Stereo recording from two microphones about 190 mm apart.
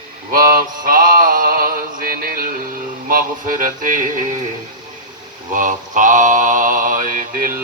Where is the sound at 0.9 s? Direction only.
45° right (ahead or behind).